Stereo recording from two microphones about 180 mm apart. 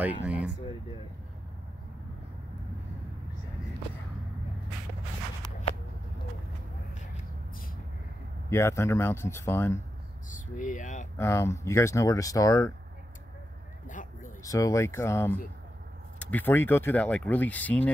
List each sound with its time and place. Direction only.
0.0 s speech: 5° right (ahead or behind)
8.5 s speech: 15° left (ahead or behind)
10.3 s speech: 45° left (ahead or behind)
11.1 s speech: 15° left (ahead or behind)
13.8 s a sound: 45° left (ahead or behind)
14.4 s speech: 20° left (ahead or behind)